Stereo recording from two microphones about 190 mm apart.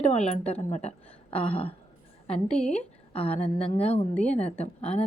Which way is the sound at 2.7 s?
30° left (ahead or behind).